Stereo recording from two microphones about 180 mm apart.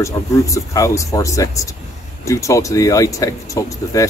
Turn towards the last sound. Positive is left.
turn(degrees=20)  # may be behind; listen again after turning